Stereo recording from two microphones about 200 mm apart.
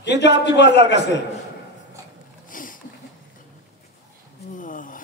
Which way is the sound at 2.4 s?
45° left (ahead or behind).